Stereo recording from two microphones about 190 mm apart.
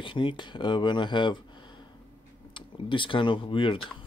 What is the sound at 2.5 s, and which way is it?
Speech, 25° left (ahead or behind).